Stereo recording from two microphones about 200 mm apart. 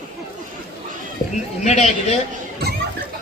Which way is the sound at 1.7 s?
35° left (ahead or behind).